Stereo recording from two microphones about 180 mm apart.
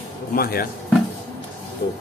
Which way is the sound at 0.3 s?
55° left (ahead or behind).